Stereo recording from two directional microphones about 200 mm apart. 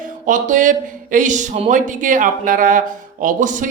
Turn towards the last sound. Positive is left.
turn(degrees=-40)  # may be behind; listen again after turning